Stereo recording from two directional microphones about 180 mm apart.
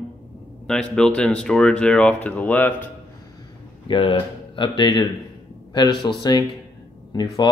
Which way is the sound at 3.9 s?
30° left (ahead or behind).